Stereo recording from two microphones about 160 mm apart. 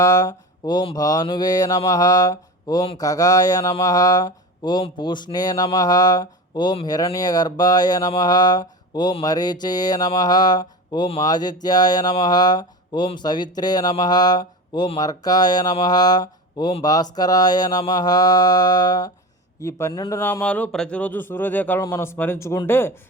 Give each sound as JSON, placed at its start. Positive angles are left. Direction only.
{"t": 0.0, "sound": "speech", "side_deg": 20}